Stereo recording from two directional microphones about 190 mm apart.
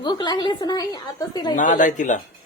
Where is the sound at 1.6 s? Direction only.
40° left (ahead or behind).